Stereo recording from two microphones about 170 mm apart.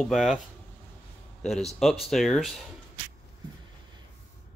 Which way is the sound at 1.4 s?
Centre (ahead or behind).